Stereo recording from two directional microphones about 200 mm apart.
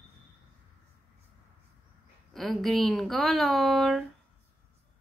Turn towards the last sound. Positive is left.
turn(degrees=0)  # may be behind; listen again after turning